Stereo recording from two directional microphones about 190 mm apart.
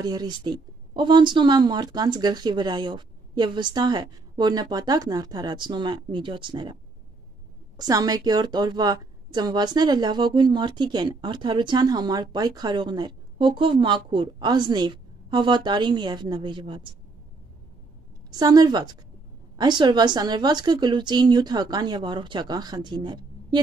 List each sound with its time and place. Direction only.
0.0 s a woman's voice: 20° right (ahead or behind)
18.3 s a woman's voice: 20° right (ahead or behind)